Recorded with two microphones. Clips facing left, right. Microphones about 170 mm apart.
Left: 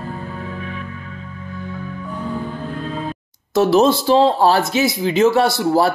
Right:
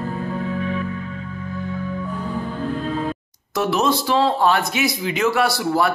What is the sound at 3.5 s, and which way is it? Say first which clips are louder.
Speech: left 6 dB; 30° left (ahead or behind).